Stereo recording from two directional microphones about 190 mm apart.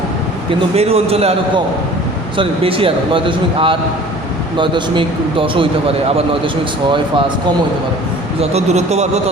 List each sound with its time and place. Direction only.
0.8 s a man's voice: 30° right (ahead or behind)
8.4 s a man's voice: 35° right (ahead or behind)